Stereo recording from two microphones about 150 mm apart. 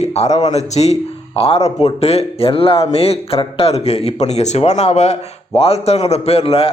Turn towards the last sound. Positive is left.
turn(degrees=40)  # may be behind; listen again after turning